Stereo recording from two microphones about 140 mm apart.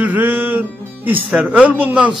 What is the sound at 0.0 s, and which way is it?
Music, 15° right (ahead or behind).